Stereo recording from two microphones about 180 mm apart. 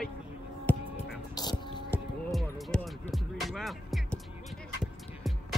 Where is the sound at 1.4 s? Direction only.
20° left (ahead or behind).